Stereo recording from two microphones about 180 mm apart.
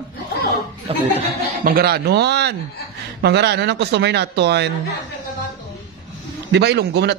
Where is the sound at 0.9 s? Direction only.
30° right (ahead or behind).